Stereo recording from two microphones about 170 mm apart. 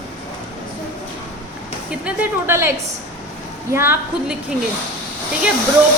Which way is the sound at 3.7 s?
10° right (ahead or behind).